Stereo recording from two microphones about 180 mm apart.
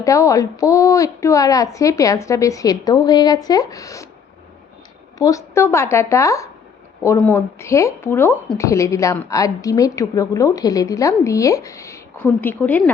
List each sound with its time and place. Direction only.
0.0 s a woman's voice: 15° left (ahead or behind)
5.1 s a woman's voice: 20° left (ahead or behind)